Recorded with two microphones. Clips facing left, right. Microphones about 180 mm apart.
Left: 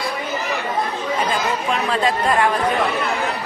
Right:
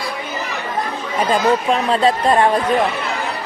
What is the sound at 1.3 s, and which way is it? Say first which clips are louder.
Speech: right 6 dB; 35° right (ahead or behind).